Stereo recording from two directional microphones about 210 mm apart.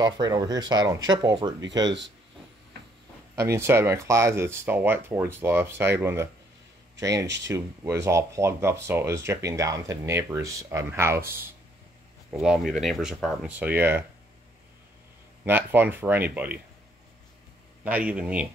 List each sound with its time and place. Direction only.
0.0 s speech: 15° right (ahead or behind)
1.9 s speech: 60° right (ahead or behind)
3.5 s speech: 10° right (ahead or behind)
15.4 s speech: 10° right (ahead or behind)
17.8 s speech: 5° right (ahead or behind)